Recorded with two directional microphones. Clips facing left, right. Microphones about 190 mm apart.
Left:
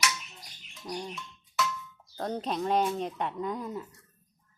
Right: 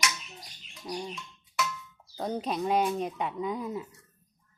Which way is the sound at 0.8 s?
5° right (ahead or behind).